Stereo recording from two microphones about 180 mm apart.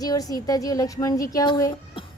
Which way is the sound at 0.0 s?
20° left (ahead or behind).